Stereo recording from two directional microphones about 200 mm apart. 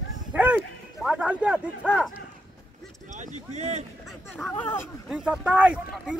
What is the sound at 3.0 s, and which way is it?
Speech, 40° right (ahead or behind).